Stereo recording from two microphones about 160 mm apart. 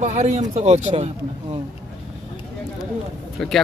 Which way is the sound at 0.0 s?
45° right (ahead or behind).